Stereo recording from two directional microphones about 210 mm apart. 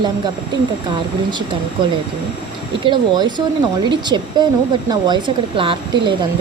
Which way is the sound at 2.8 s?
20° right (ahead or behind).